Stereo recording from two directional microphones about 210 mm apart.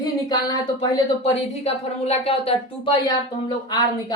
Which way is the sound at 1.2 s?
30° left (ahead or behind).